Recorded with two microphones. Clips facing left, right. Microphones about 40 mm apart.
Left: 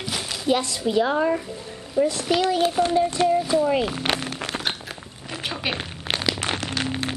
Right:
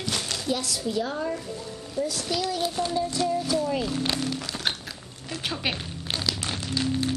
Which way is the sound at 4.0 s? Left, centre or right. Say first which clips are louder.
Left 2 dB; left.